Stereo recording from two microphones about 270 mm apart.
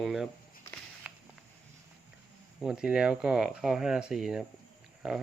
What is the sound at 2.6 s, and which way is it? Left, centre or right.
Speech, centre.